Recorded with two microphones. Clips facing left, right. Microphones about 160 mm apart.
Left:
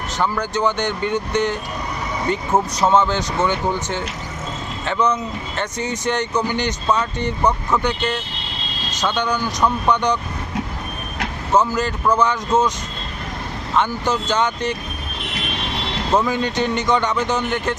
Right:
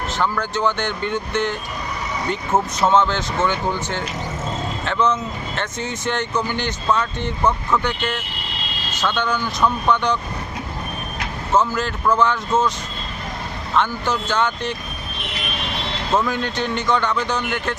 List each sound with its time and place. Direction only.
0.2 s speech: 15° left (ahead or behind)
2.8 s speech: 15° left (ahead or behind)
9.0 s speech: 15° left (ahead or behind)
11.5 s speech: 15° left (ahead or behind)
13.7 s speech: 15° left (ahead or behind)
16.2 s speech: 10° left (ahead or behind)